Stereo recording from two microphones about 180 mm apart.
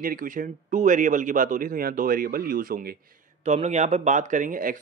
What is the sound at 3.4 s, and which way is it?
Speech, 40° right (ahead or behind).